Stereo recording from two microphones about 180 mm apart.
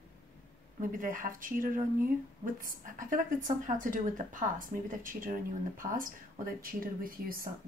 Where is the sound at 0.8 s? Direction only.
50° right (ahead or behind).